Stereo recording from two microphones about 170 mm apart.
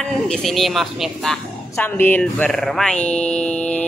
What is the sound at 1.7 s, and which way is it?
Speech, 10° left (ahead or behind).